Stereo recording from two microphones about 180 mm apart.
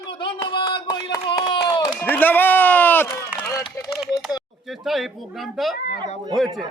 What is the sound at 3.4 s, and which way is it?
Run, 15° left (ahead or behind).